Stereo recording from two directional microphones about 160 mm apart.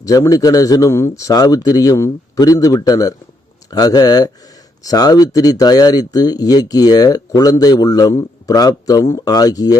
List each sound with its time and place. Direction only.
0.0 s speech: 20° left (ahead or behind)